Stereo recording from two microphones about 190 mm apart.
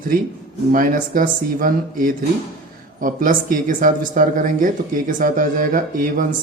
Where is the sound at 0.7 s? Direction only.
45° right (ahead or behind).